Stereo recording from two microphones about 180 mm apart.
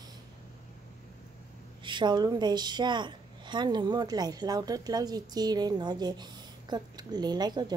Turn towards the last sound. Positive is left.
turn(degrees=-25)  # may be behind; listen again after turning